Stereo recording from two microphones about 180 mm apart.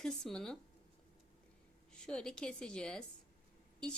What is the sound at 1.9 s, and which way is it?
A woman's voice, 5° left (ahead or behind).